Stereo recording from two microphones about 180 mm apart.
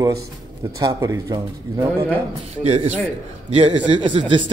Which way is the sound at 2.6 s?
35° right (ahead or behind).